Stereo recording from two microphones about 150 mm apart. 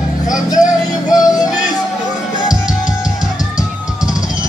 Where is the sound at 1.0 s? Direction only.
25° left (ahead or behind).